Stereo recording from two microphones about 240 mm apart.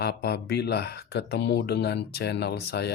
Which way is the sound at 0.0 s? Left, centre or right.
Left.